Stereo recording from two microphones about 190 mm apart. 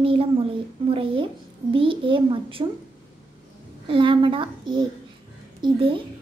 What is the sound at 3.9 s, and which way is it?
A child's voice, 25° right (ahead or behind).